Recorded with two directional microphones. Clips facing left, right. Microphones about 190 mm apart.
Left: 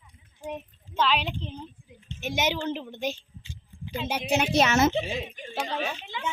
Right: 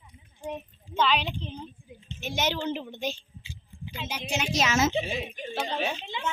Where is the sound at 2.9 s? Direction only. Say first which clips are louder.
Left 2 dB; 10° left (ahead or behind).